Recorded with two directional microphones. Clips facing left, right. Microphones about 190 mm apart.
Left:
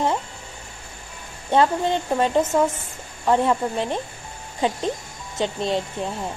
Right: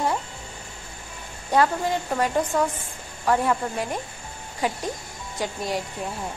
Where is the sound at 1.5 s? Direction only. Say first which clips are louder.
Left 2 dB; 25° left (ahead or behind).